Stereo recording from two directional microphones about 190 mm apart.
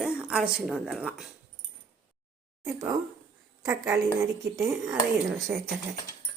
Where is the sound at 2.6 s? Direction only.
20° right (ahead or behind).